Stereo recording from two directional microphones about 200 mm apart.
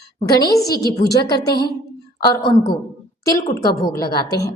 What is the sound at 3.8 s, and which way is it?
Speech, 15° left (ahead or behind).